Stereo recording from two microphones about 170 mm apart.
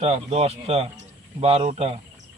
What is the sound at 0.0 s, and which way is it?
Speech, 35° right (ahead or behind).